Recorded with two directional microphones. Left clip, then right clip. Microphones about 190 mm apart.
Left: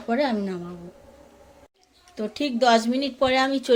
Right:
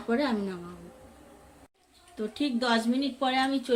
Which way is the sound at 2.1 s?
40° left (ahead or behind).